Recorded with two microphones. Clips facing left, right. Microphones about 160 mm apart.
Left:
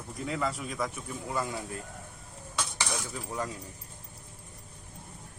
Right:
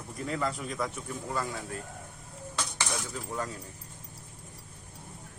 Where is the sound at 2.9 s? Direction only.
5° left (ahead or behind).